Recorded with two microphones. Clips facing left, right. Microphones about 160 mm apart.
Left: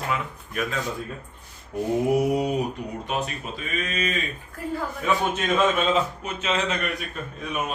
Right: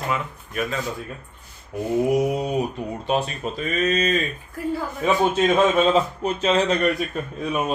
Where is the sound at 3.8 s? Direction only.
40° right (ahead or behind).